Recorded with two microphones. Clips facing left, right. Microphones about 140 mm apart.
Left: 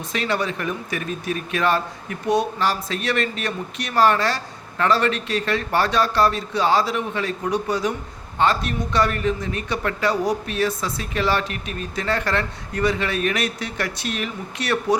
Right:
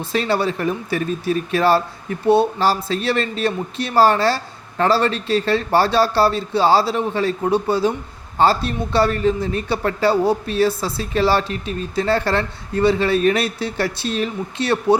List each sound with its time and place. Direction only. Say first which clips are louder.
0.1 s a man's voice: right 4 dB; 35° right (ahead or behind)